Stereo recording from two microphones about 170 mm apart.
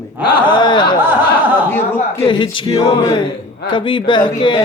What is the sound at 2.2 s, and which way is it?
Speech, 30° left (ahead or behind).